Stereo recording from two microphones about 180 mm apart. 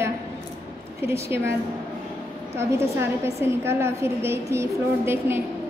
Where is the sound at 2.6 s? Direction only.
15° right (ahead or behind).